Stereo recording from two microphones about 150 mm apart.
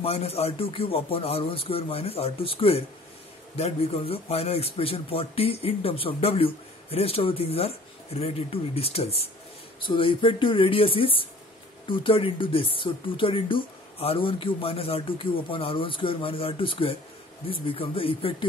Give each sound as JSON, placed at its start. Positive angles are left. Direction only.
{"t": 0.0, "sound": "a man's voice", "side_deg": 40}